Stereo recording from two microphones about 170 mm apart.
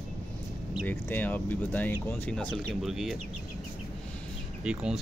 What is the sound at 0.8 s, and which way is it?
Speech, 10° left (ahead or behind).